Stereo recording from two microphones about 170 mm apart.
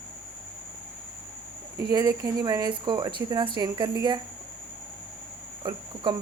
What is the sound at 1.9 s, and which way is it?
Speech, 25° right (ahead or behind).